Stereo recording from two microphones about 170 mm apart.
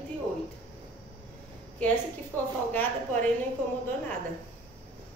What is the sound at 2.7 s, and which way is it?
Speech, 10° left (ahead or behind).